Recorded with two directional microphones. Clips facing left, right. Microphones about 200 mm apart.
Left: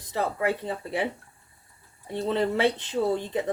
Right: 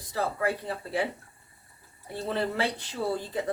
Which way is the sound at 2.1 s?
20° left (ahead or behind).